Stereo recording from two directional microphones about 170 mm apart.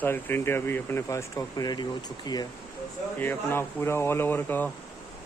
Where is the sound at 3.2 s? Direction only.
10° left (ahead or behind).